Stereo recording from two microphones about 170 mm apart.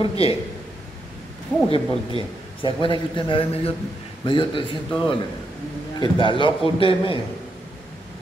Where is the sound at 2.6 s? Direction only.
30° left (ahead or behind).